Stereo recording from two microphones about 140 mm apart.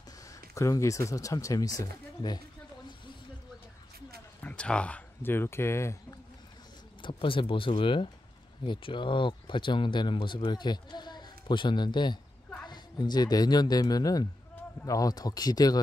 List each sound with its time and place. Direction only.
0.3 s speech: 20° left (ahead or behind)
4.4 s speech: 10° left (ahead or behind)
7.0 s speech: 35° left (ahead or behind)